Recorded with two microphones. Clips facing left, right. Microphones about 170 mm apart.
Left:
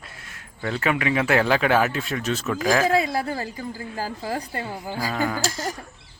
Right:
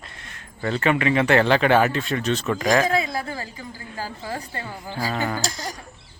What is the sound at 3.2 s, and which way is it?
A woman's voice, 40° left (ahead or behind).